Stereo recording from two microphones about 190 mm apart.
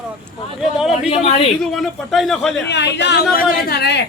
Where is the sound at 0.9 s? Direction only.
30° left (ahead or behind).